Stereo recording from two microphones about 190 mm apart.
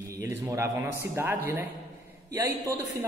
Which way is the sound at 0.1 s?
15° right (ahead or behind).